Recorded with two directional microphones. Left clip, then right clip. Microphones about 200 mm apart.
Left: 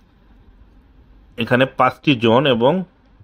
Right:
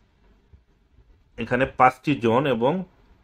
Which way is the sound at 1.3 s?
45° left (ahead or behind).